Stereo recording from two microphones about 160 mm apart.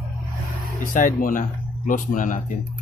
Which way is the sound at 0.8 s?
55° left (ahead or behind).